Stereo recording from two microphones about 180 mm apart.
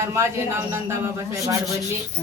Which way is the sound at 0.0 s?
15° right (ahead or behind).